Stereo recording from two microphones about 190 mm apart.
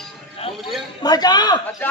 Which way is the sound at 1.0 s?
20° left (ahead or behind).